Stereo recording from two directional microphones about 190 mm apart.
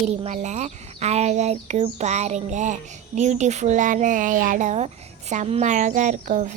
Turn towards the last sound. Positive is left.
turn(degrees=-40)  # may be behind; listen again after turning